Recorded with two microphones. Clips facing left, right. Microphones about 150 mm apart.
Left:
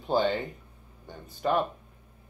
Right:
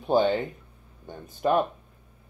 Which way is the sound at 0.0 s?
20° right (ahead or behind).